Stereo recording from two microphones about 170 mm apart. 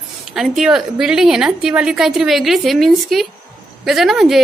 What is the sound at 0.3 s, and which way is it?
A woman's voice, centre (ahead or behind).